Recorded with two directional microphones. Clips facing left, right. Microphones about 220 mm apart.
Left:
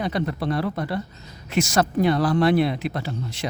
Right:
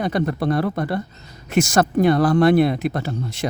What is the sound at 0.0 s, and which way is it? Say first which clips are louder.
Speech: right 4 dB; 50° right (ahead or behind).